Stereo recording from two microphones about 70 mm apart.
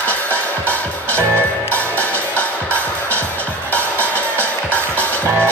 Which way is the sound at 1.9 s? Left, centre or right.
Left.